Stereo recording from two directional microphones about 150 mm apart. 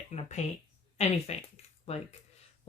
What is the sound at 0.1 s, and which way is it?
Speech, 50° left (ahead or behind).